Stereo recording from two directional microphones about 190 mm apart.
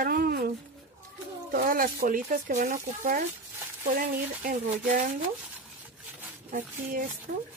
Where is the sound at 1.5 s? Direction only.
50° right (ahead or behind).